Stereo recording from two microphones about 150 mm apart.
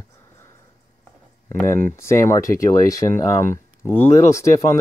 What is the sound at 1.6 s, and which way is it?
Speech, 15° left (ahead or behind).